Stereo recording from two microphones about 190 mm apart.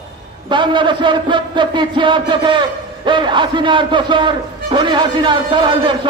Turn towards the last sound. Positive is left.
turn(degrees=-25)  # may be behind; listen again after turning